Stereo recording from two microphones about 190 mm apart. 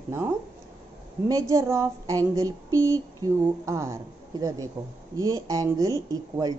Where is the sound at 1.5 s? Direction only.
15° right (ahead or behind).